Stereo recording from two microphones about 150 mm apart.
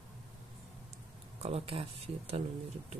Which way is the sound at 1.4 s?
40° right (ahead or behind).